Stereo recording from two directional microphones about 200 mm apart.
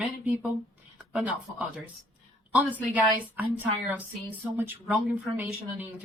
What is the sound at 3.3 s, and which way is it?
Speech, 10° right (ahead or behind).